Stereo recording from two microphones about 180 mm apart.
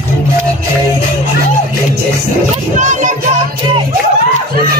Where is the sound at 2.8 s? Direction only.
45° right (ahead or behind).